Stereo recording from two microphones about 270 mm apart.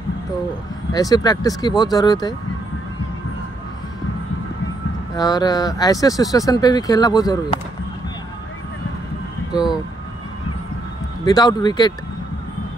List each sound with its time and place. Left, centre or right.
0.9 s speech: centre
5.1 s speech: centre
11.3 s speech: centre